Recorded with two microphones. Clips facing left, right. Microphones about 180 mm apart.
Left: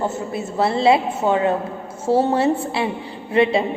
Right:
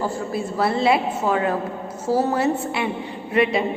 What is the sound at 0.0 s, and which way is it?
A woman's voice, 25° left (ahead or behind).